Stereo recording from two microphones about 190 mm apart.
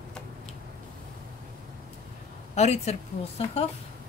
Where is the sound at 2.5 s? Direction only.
35° left (ahead or behind).